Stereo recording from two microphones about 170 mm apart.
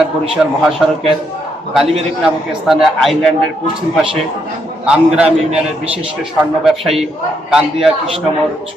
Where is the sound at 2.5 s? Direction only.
Centre (ahead or behind).